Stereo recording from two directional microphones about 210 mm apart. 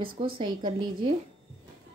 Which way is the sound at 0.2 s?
20° right (ahead or behind).